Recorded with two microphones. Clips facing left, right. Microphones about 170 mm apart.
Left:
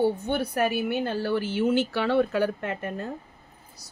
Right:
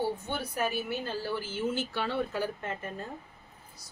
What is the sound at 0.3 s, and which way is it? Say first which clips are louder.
Speech: left 7 dB; 65° left (ahead or behind).